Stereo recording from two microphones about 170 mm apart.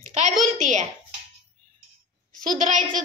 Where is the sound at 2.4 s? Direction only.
50° right (ahead or behind).